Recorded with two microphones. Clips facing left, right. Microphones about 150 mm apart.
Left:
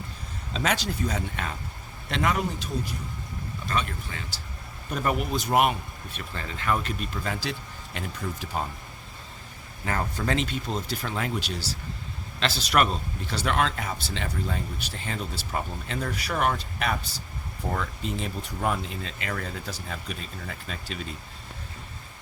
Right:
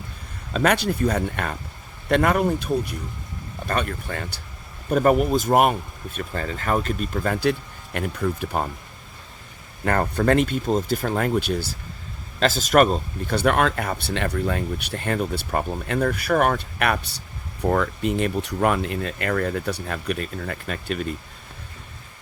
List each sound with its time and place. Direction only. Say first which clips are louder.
0.5 s speech: right 7 dB; 55° right (ahead or behind)
9.8 s speech: right 8 dB; 60° right (ahead or behind)